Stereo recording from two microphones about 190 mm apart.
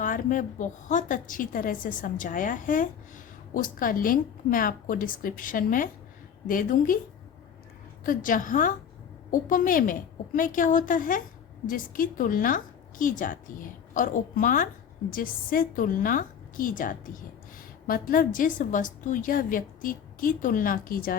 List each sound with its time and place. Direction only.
0.0 s a woman's voice: 45° left (ahead or behind)
8.0 s a woman's voice: 45° left (ahead or behind)